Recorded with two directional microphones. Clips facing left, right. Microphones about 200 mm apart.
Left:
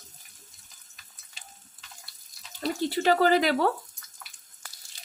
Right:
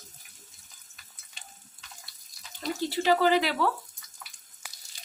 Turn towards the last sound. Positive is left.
turn(degrees=45)  # may be behind; listen again after turning